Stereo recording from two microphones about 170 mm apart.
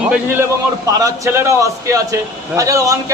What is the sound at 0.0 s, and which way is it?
Speech, 5° right (ahead or behind).